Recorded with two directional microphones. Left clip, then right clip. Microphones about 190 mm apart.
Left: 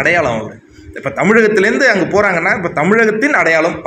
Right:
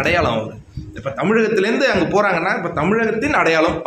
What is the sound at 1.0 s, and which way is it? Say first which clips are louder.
A man's voice: left 6 dB; 25° left (ahead or behind).